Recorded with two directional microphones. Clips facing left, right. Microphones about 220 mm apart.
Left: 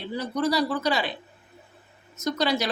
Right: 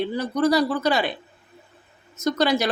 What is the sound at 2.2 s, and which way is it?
Speech, 50° right (ahead or behind).